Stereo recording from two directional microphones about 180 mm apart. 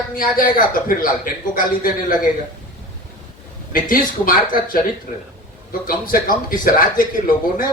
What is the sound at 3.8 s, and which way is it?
Speech, 50° left (ahead or behind).